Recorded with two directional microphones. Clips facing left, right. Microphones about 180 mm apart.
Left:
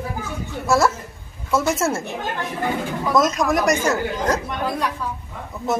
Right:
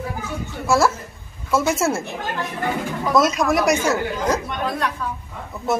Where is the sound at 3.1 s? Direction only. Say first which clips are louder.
Right 1 dB; 5° right (ahead or behind).